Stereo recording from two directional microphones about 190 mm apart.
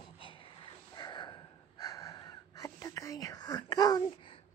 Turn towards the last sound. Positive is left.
turn(degrees=25)  # may be behind; listen again after turning